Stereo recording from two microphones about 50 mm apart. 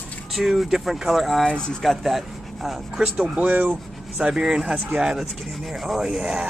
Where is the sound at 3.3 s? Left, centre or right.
Right.